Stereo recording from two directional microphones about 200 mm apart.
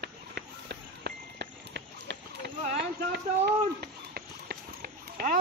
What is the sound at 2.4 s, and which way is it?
Boat, 55° right (ahead or behind).